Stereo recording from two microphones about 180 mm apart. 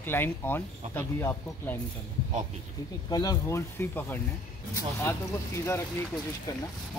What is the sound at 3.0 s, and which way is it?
Speech, 20° left (ahead or behind).